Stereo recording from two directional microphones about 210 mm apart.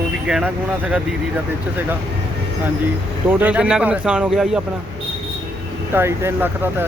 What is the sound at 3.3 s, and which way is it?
A man's voice, 5° right (ahead or behind).